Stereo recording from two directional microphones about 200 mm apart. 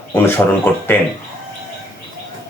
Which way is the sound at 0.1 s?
10° left (ahead or behind).